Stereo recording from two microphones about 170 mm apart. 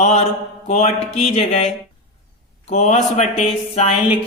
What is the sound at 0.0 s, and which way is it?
Speech, 40° left (ahead or behind).